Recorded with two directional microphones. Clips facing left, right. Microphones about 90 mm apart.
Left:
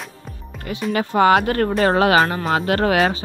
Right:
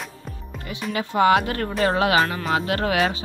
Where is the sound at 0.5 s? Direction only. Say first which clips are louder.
Left 6 dB; 50° left (ahead or behind).